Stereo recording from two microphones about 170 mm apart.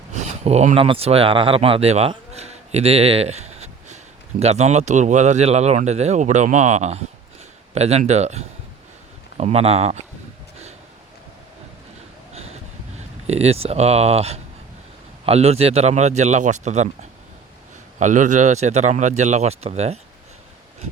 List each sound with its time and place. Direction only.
0.1 s speech: 40° right (ahead or behind)
13.2 s speech: 40° right (ahead or behind)